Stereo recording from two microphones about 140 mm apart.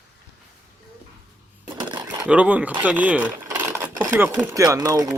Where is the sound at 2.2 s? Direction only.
10° right (ahead or behind).